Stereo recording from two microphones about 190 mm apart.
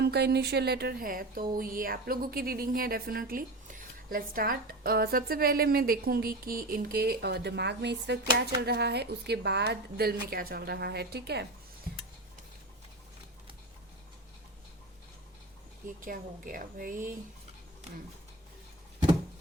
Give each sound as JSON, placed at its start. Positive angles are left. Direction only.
{"t": 0.0, "sound": "speech", "side_deg": -60}
{"t": 16.0, "sound": "speech", "side_deg": -45}